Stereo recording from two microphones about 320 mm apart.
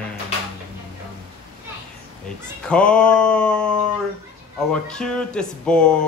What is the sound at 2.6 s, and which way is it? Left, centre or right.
Speech, centre.